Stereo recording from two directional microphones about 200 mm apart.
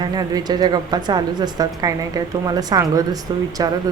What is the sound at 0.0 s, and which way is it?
A woman's voice, 20° right (ahead or behind).